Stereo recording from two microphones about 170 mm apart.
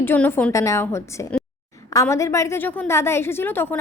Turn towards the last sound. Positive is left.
turn(degrees=15)  # may be behind; listen again after turning